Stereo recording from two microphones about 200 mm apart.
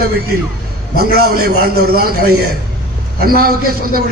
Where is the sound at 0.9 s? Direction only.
50° right (ahead or behind).